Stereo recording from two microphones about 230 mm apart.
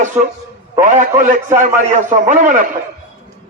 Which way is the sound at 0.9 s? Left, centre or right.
Right.